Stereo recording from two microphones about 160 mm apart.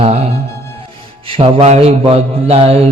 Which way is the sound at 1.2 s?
35° right (ahead or behind).